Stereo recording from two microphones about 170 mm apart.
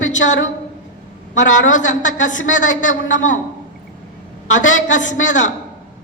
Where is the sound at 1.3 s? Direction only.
45° left (ahead or behind).